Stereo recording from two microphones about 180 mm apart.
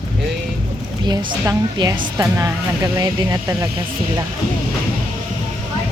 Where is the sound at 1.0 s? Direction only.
25° right (ahead or behind).